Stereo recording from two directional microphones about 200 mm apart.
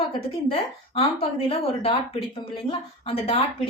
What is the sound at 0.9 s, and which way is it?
A woman's voice, 30° left (ahead or behind).